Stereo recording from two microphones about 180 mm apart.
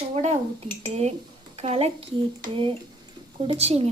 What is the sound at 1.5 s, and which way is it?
Speech, 35° right (ahead or behind).